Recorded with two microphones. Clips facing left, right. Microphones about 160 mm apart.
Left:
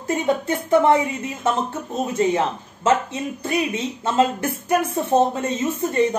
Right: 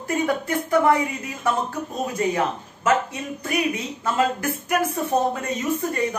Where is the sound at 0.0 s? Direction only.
25° left (ahead or behind).